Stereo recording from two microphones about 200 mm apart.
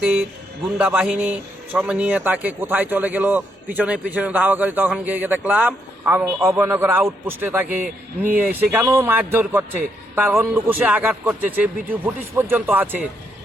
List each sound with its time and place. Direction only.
0.8 s a man's voice: 5° right (ahead or behind)